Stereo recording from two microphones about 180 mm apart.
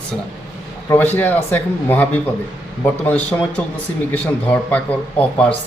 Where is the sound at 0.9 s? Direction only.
10° left (ahead or behind).